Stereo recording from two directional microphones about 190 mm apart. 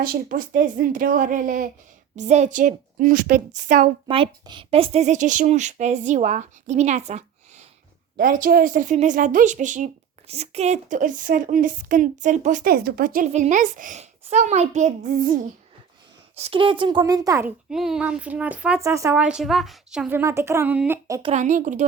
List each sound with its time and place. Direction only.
0.0 s a woman's voice: 50° right (ahead or behind)
4.1 s a woman's voice: 25° right (ahead or behind); by 15.4 s 45° right (ahead or behind)
16.3 s a woman's voice: 30° right (ahead or behind)
17.7 s a woman's voice: 5° right (ahead or behind)
19.2 s a woman's voice: 5° right (ahead or behind)
21.3 s a woman's voice: 40° right (ahead or behind)